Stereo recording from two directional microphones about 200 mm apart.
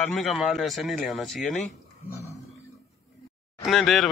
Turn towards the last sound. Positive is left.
turn(degrees=0)  # may be behind; listen again after turning